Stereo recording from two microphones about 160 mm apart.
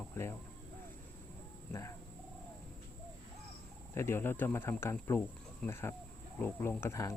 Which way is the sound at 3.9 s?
15° left (ahead or behind).